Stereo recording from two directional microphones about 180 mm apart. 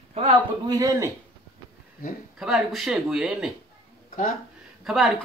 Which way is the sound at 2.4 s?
Centre (ahead or behind).